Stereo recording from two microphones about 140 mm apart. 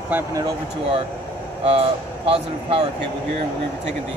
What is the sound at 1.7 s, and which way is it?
Speech, 45° right (ahead or behind).